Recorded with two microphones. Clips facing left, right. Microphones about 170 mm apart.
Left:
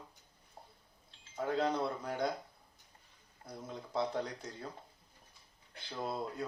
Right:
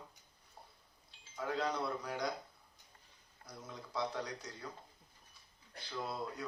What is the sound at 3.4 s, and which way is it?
A man's voice, 25° left (ahead or behind).